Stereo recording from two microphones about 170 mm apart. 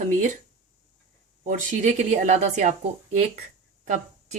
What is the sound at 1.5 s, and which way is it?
Speech, 45° right (ahead or behind).